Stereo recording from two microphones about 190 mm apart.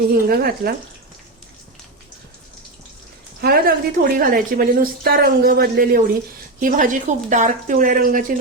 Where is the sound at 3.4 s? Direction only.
50° right (ahead or behind).